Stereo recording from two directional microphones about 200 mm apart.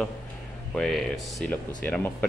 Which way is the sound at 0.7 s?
Centre (ahead or behind).